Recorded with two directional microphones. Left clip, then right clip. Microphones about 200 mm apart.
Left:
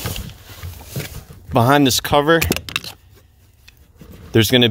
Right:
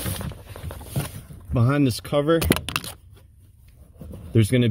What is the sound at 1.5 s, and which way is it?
Speech, 45° left (ahead or behind).